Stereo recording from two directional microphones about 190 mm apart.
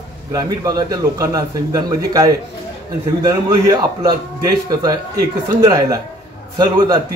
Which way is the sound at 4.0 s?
20° right (ahead or behind).